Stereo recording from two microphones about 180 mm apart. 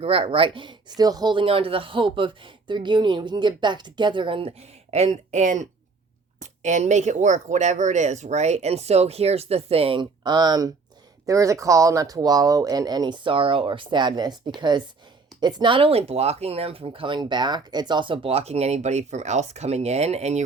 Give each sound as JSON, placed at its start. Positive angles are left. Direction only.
{"t": 0.0, "sound": "speech", "side_deg": -30}